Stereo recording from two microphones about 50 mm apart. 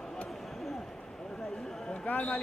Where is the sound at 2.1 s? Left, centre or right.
Left.